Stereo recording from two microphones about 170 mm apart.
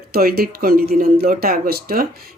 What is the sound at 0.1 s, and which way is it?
Speech, 60° right (ahead or behind).